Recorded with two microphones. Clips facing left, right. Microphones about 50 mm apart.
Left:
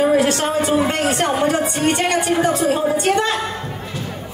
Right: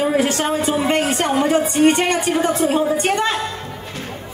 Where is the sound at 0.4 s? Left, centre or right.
Right.